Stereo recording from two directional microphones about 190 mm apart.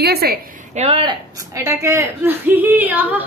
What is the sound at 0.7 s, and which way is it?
Speech, 30° right (ahead or behind).